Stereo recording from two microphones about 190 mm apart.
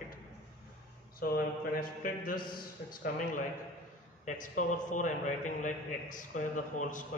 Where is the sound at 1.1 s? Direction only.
50° left (ahead or behind).